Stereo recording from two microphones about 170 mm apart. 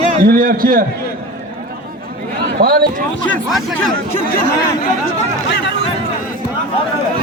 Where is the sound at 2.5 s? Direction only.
60° right (ahead or behind).